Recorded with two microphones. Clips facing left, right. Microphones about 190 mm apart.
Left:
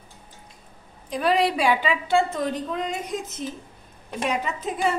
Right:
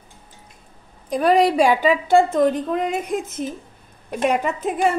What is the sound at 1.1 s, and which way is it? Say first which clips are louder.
A woman's voice: right 6 dB; 45° right (ahead or behind).